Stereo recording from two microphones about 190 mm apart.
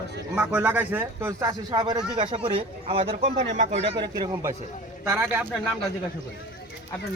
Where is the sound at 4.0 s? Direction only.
20° right (ahead or behind).